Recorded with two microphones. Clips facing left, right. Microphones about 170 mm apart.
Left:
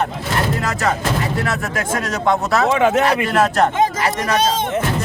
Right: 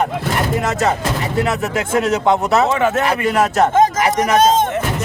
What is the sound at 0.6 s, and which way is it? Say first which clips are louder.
Speech: right 2 dB; 25° right (ahead or behind).